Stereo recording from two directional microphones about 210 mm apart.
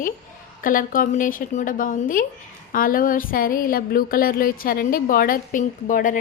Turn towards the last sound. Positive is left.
turn(degrees=40)  # may be behind; listen again after turning